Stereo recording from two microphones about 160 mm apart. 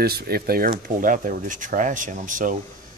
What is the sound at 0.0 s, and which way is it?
Speech, 75° right (ahead or behind).